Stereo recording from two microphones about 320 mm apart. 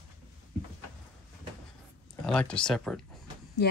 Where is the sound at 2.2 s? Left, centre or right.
Centre.